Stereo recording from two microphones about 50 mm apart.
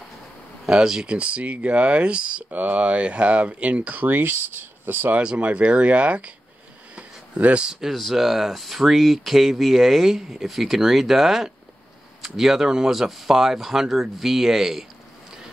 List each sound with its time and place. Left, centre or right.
0.7 s speech: centre
1.1 s speech: right
5.2 s speech: right
7.3 s speech: right
7.6 s speech: centre